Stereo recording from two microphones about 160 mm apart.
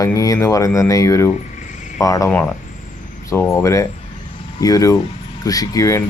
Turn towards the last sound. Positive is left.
turn(degrees=20)  # may be behind; listen again after turning